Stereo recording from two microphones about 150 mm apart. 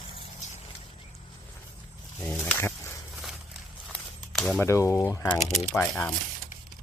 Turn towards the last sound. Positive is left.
turn(degrees=10)  # may be behind; listen again after turning